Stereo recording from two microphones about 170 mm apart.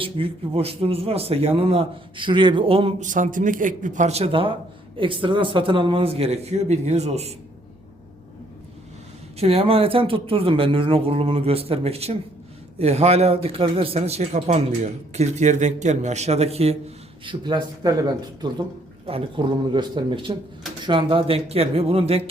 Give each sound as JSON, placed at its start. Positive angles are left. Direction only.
{"t": 0.0, "sound": "a man's voice", "side_deg": -35}
{"t": 3.1, "sound": "a man's voice", "side_deg": -50}
{"t": 9.4, "sound": "a man's voice", "side_deg": -35}
{"t": 17.2, "sound": "a man's voice", "side_deg": -25}